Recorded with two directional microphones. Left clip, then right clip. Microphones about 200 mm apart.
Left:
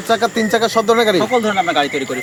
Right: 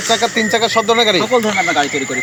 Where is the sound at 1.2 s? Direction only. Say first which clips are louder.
Right 1 dB; 5° left (ahead or behind).